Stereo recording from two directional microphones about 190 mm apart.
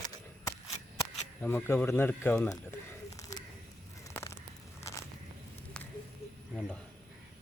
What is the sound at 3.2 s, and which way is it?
Snake, 15° left (ahead or behind).